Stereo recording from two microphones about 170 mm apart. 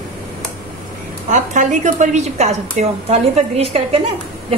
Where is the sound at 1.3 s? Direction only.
45° right (ahead or behind).